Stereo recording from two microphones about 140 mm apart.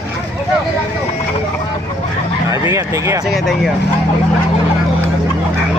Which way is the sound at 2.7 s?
20° right (ahead or behind).